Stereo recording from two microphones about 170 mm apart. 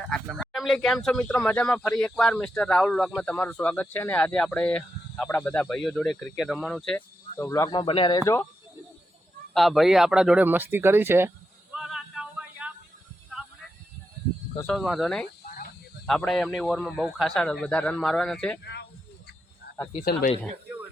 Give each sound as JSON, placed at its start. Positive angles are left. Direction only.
{"t": 0.1, "sound": "speech", "side_deg": 0}
{"t": 9.6, "sound": "speech", "side_deg": 0}
{"t": 11.7, "sound": "a sound", "side_deg": 0}
{"t": 14.7, "sound": "speech", "side_deg": 0}
{"t": 18.6, "sound": "speech", "side_deg": 80}
{"t": 19.7, "sound": "cricket", "side_deg": 80}